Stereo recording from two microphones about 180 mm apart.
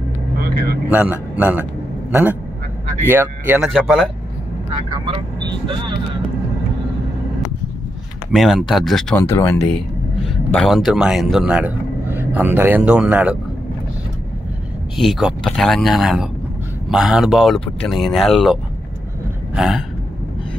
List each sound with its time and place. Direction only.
0.8 s a man's voice: 10° right (ahead or behind)
3.6 s speech: centre (ahead or behind)
5.0 s speech: 25° right (ahead or behind)
8.3 s speech: centre (ahead or behind)
9.2 s speech: 15° left (ahead or behind)
10.2 s a man's voice: centre (ahead or behind)
15.0 s speech: centre (ahead or behind)
19.5 s a sound: centre (ahead or behind)